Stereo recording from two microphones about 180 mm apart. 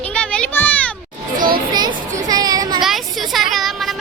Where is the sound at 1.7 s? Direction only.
25° right (ahead or behind).